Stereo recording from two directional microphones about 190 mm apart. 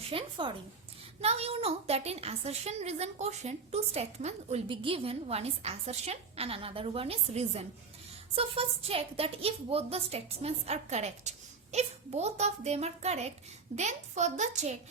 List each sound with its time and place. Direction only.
0.1 s a woman's voice: 25° right (ahead or behind)